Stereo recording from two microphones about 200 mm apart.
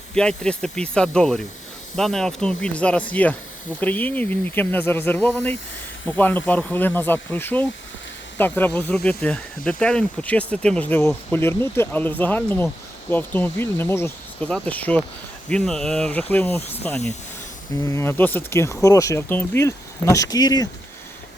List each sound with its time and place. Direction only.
0.1 s speech: 5° left (ahead or behind)